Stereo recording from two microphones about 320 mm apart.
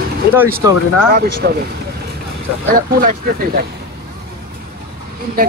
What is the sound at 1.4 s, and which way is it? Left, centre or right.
Speech, right.